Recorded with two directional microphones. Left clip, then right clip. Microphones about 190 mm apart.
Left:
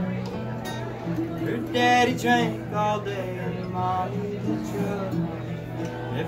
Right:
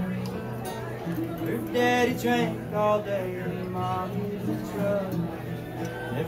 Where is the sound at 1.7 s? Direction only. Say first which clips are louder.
Left 4 dB; 15° left (ahead or behind).